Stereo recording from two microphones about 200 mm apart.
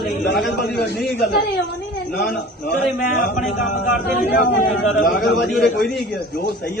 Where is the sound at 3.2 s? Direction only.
40° left (ahead or behind).